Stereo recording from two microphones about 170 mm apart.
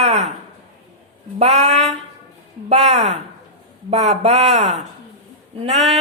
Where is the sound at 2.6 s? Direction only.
40° right (ahead or behind).